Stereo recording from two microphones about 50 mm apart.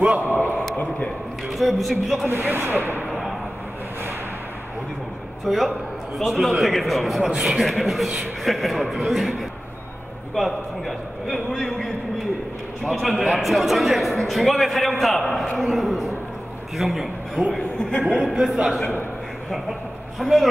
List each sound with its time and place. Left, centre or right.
0.0 s a man's voice: right
0.7 s a man's voice: left
1.5 s a man's voice: centre
2.2 s speech: right
3.1 s a sound: centre
5.4 s a man's voice: centre
17.6 s a man's voice: centre
18.0 s a man's voice: centre
20.2 s speech: centre